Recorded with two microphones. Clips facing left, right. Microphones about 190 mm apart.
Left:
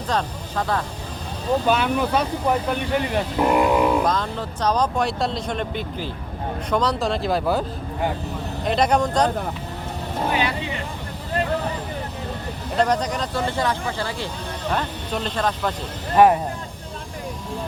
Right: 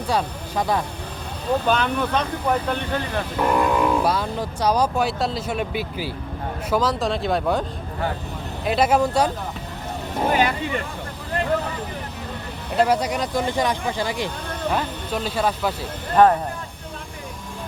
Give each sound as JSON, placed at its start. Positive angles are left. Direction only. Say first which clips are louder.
{"t": 0.1, "sound": "speech", "louder": "right 1 dB", "side_deg": -10}
{"t": 1.6, "sound": "speech", "louder": "left 1 dB", "side_deg": 5}
{"t": 4.0, "sound": "speech", "louder": "right 1 dB", "side_deg": -10}
{"t": 8.6, "sound": "speech", "louder": "right 1 dB", "side_deg": -5}
{"t": 10.3, "sound": "speech", "louder": "right 5 dB", "side_deg": -45}
{"t": 12.7, "sound": "speech", "louder": "right 1 dB", "side_deg": -5}
{"t": 16.1, "sound": "speech", "louder": "left 1 dB", "side_deg": 10}